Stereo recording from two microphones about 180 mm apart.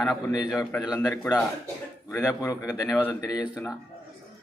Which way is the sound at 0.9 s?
20° left (ahead or behind).